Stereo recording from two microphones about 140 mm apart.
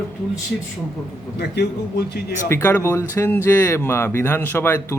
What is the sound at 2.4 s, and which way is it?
Speech, 15° left (ahead or behind).